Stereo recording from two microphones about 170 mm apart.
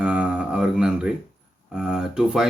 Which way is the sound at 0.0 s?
5° right (ahead or behind).